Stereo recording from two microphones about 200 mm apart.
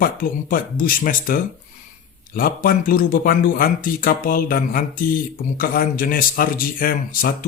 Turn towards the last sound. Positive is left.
turn(degrees=45)  # may be behind; listen again after turning